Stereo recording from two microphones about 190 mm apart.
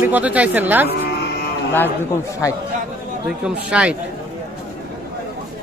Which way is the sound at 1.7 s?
15° left (ahead or behind).